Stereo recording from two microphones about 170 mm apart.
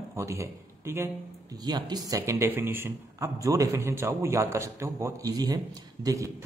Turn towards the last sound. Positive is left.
turn(degrees=-20)  # may be behind; listen again after turning